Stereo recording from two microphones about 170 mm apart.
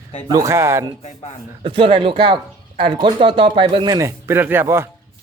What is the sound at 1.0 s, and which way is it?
Speech, 45° left (ahead or behind).